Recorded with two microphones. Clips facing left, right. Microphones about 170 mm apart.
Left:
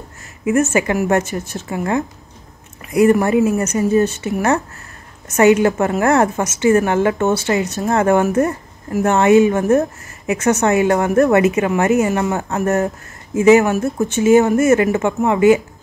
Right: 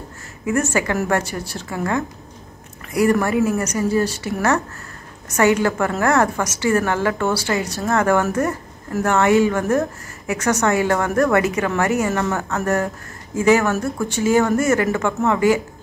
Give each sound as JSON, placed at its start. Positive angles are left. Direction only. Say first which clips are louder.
{"t": 0.7, "sound": "a woman's voice", "louder": "left 4 dB", "side_deg": 20}